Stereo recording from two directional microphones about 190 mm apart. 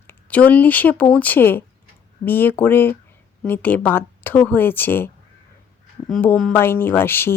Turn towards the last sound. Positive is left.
turn(degrees=10)  # may be behind; listen again after turning